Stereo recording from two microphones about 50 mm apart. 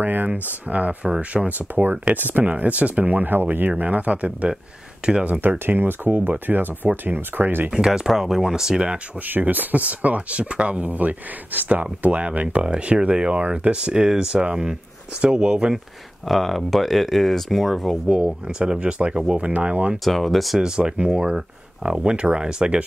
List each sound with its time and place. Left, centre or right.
0.0 s speech: right; by 5.2 s centre
5.4 s speech: right
7.7 s speech: centre
9.3 s speech: right; by 15.7 s centre
16.3 s speech: centre
18.0 s speech: right
20.1 s speech: centre
20.6 s speech: centre